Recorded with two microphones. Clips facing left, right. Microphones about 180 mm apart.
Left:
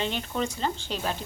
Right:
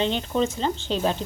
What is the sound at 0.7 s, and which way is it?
Speech, 10° left (ahead or behind).